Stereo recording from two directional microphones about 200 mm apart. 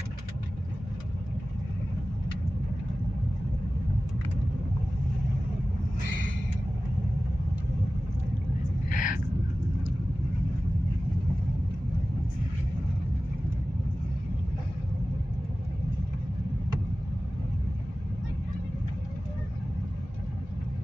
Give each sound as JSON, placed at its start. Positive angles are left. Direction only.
{"t": 8.9, "sound": "vehicle", "side_deg": 40}